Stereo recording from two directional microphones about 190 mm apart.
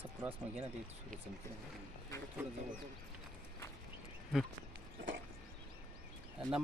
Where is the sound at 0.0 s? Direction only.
10° right (ahead or behind).